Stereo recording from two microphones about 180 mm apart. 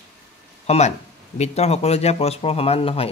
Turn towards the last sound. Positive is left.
turn(degrees=30)  # may be behind; listen again after turning